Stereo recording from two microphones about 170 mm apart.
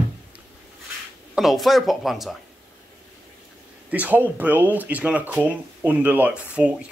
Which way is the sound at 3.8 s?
10° right (ahead or behind).